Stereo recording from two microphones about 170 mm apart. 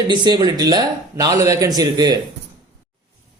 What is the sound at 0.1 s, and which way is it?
Speech, 25° right (ahead or behind).